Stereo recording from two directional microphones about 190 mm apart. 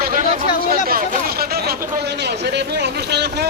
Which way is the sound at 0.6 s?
50° right (ahead or behind).